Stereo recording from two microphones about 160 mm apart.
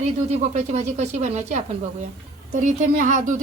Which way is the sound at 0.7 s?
45° right (ahead or behind).